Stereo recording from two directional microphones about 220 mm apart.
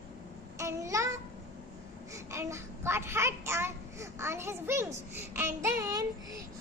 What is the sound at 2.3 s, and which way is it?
A child's voice, 10° right (ahead or behind).